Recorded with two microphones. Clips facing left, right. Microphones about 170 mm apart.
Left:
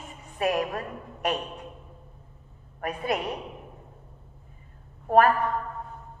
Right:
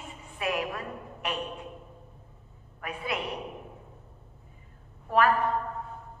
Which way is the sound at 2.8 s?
45° left (ahead or behind).